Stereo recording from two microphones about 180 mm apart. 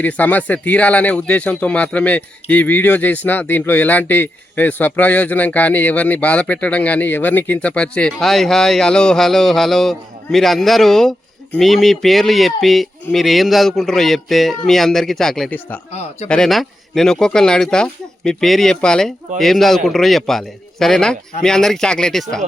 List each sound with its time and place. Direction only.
0.0 s speech: 10° left (ahead or behind)
15.9 s speech: 35° left (ahead or behind)
16.3 s speech: centre (ahead or behind)